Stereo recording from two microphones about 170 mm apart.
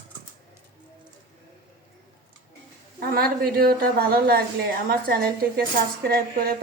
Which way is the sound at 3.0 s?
65° right (ahead or behind).